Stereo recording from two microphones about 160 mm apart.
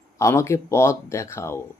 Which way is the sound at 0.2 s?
20° left (ahead or behind).